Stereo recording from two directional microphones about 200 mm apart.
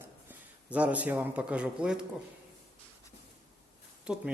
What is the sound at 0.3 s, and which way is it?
Speech, 5° right (ahead or behind).